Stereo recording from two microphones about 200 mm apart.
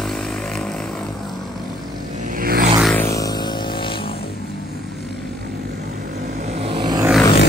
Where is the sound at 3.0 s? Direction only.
15° left (ahead or behind).